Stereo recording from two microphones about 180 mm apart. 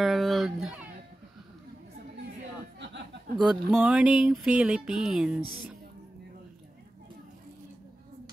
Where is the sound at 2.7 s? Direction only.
75° right (ahead or behind).